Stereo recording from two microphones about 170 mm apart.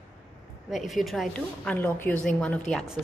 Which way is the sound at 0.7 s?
Centre (ahead or behind).